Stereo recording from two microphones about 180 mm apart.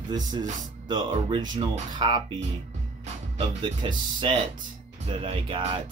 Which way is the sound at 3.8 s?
25° right (ahead or behind).